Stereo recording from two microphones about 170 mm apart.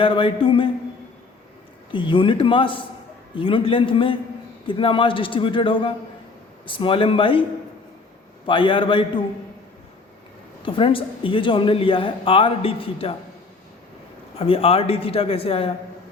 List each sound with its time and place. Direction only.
0.0 s a woman's voice: 30° left (ahead or behind)
1.9 s a man's voice: 30° left (ahead or behind)
8.4 s a man's voice: 30° left (ahead or behind)
10.7 s a woman's voice: 30° left (ahead or behind)
14.3 s a woman's voice: 35° left (ahead or behind)